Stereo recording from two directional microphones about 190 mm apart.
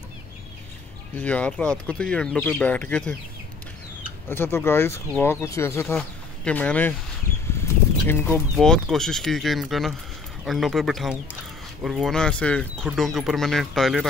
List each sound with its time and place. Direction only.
1.1 s speech: 5° left (ahead or behind)
4.3 s speech: 10° left (ahead or behind)
8.1 s speech: 10° left (ahead or behind)